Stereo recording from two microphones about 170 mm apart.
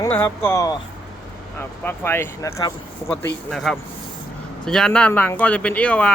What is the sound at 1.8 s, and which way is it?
Speech, 15° left (ahead or behind).